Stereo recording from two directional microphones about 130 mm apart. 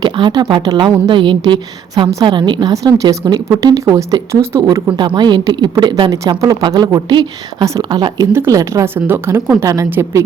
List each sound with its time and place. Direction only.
0.0 s a woman's voice: 35° right (ahead or behind)
8.3 s a woman's voice: 20° right (ahead or behind)